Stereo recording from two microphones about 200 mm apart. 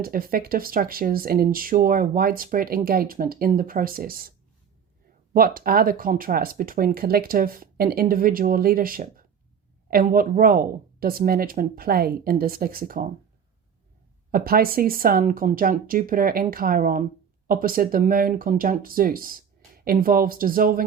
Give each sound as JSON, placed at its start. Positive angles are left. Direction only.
{"t": 0.0, "sound": "speech", "side_deg": -45}
{"t": 14.3, "sound": "speech", "side_deg": -45}